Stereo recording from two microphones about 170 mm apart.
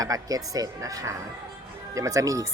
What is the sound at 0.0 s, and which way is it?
Speech, 20° right (ahead or behind).